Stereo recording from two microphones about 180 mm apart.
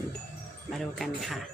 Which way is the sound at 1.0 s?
Centre (ahead or behind).